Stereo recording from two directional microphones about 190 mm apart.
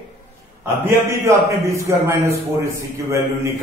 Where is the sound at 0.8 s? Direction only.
15° right (ahead or behind).